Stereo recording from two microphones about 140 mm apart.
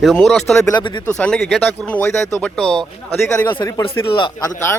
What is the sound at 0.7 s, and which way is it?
Speech, 30° left (ahead or behind).